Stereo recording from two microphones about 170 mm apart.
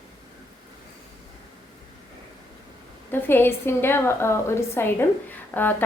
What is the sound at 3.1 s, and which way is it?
A woman's voice, 10° left (ahead or behind).